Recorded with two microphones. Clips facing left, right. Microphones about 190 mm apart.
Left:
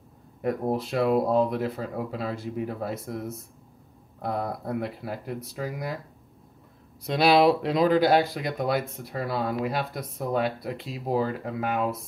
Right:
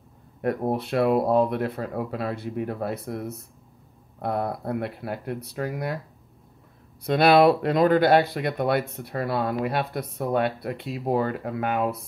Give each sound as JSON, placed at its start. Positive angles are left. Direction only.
{"t": 0.4, "sound": "speech", "side_deg": 0}
{"t": 7.1, "sound": "speech", "side_deg": -55}
{"t": 7.4, "sound": "speech", "side_deg": 0}